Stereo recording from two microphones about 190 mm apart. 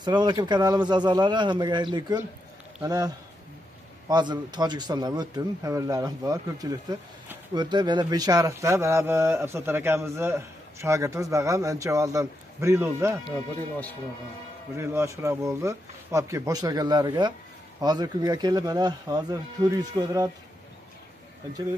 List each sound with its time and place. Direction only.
0.0 s speech: 20° right (ahead or behind)
4.1 s a man's voice: 20° right (ahead or behind)
14.8 s a man's voice: 15° right (ahead or behind)